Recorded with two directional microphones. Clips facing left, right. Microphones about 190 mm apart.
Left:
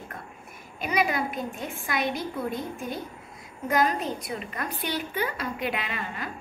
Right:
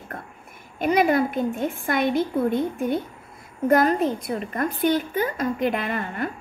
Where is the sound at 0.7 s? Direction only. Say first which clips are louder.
Right 7 dB; 55° right (ahead or behind).